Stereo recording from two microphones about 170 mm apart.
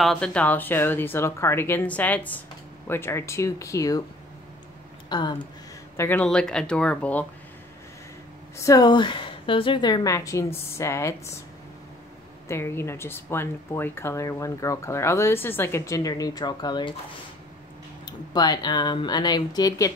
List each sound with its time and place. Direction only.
0.0 s speech: 5° left (ahead or behind)
5.1 s a woman's voice: 25° left (ahead or behind)
5.9 s speech: 10° left (ahead or behind)
8.5 s a woman's voice: 20° left (ahead or behind)
12.4 s speech: 15° left (ahead or behind)
18.0 s a woman's voice: 25° left (ahead or behind)